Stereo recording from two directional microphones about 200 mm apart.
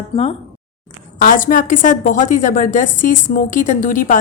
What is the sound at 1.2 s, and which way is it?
A woman's voice, 45° left (ahead or behind).